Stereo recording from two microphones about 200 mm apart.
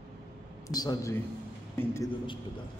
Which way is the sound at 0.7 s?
20° left (ahead or behind).